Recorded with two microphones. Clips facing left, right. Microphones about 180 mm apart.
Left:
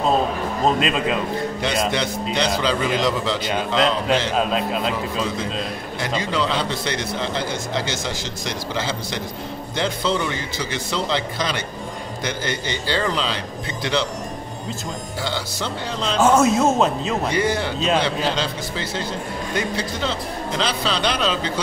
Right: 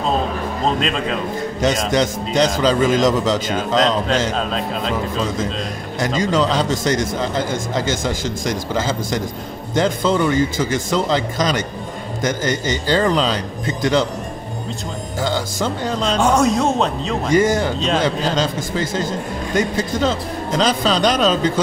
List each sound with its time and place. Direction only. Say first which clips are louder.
0.7 s speech: left 1 dB; 5° left (ahead or behind)
1.6 s a man's voice: right 7 dB; 45° right (ahead or behind)
4.4 s speech: left 1 dB; 5° left (ahead or behind)
5.9 s a man's voice: right 6 dB; 45° right (ahead or behind)
15.2 s a man's voice: right 7 dB; 45° right (ahead or behind)
16.2 s speech: left 1 dB; 5° left (ahead or behind)
17.3 s a man's voice: right 10 dB; 45° right (ahead or behind)